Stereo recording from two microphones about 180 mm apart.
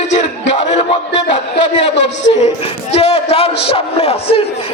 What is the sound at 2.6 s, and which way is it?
A man's voice, 35° left (ahead or behind).